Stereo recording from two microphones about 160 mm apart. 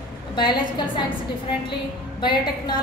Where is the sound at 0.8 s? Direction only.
30° left (ahead or behind).